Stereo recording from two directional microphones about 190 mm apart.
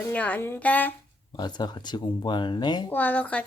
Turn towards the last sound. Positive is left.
turn(degrees=5)  # may be behind; listen again after turning